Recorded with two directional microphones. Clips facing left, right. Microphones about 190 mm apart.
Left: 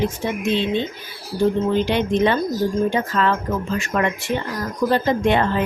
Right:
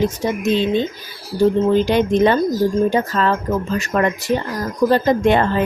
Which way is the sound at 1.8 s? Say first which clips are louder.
Right 4 dB; 40° right (ahead or behind).